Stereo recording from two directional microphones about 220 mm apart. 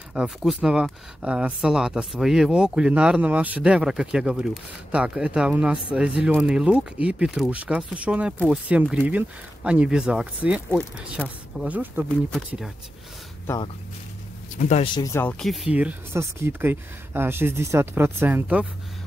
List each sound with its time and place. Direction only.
0.1 s speech: centre (ahead or behind)
14.6 s speech: 30° left (ahead or behind)
15.0 s speech: 15° left (ahead or behind); by 18.7 s 5° right (ahead or behind)